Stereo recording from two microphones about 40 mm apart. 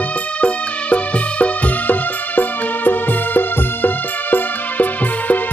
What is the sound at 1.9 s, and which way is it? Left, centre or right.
Music, left.